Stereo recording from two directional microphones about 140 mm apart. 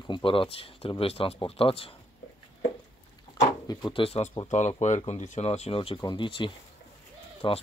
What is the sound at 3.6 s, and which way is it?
Speech, 35° left (ahead or behind).